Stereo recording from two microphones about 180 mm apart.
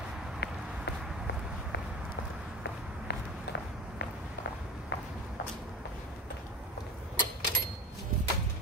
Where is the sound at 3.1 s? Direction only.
70° left (ahead or behind).